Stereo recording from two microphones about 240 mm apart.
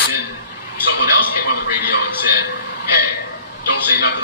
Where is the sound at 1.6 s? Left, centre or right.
Left.